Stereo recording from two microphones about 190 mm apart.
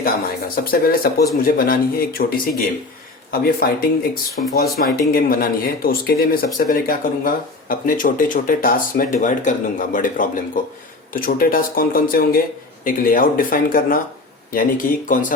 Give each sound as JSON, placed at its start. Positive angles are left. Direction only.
{"t": 0.0, "sound": "speech", "side_deg": 50}
{"t": 3.4, "sound": "speech", "side_deg": 55}